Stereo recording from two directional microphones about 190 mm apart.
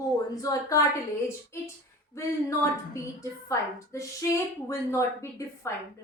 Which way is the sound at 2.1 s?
15° left (ahead or behind).